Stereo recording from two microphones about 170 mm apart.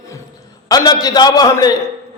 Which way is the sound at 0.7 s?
20° left (ahead or behind).